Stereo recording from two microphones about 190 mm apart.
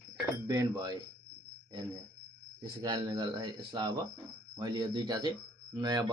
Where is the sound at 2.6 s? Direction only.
20° right (ahead or behind).